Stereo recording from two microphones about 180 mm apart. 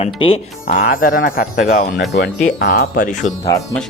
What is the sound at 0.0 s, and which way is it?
Speech, 30° left (ahead or behind).